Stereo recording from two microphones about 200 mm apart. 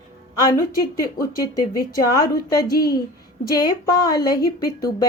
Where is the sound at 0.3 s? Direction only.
20° left (ahead or behind).